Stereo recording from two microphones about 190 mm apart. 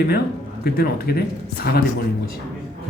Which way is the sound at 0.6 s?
55° left (ahead or behind).